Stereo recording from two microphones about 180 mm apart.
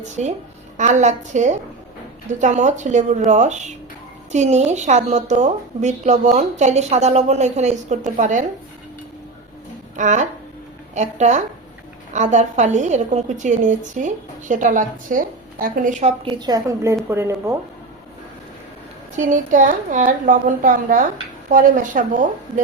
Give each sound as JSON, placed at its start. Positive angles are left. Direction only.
{"t": 0.0, "sound": "a woman's voice", "side_deg": -40}
{"t": 9.9, "sound": "a woman's voice", "side_deg": -40}
{"t": 16.4, "sound": "a woman's voice", "side_deg": -20}
{"t": 19.1, "sound": "a woman's voice", "side_deg": -45}